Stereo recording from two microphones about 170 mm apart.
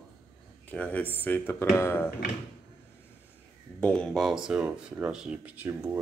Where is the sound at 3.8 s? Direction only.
5° left (ahead or behind).